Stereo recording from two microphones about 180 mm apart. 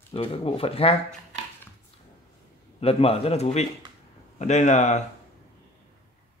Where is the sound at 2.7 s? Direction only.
30° left (ahead or behind).